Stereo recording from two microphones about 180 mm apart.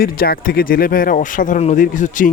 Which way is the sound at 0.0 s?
55° left (ahead or behind).